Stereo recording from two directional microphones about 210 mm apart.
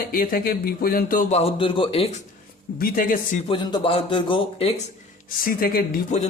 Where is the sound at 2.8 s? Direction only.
40° left (ahead or behind).